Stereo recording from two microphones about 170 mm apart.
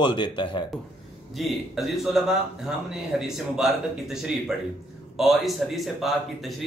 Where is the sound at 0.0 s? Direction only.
25° left (ahead or behind).